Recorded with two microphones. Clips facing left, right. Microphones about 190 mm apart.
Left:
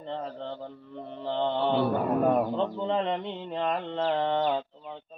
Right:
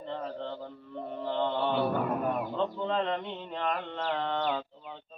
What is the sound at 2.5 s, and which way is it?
Speech, 20° left (ahead or behind).